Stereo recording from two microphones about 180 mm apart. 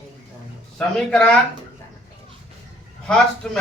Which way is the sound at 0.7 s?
5° left (ahead or behind).